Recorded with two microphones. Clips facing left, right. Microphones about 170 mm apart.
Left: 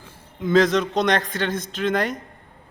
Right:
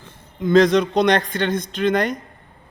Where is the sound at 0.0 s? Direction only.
5° left (ahead or behind).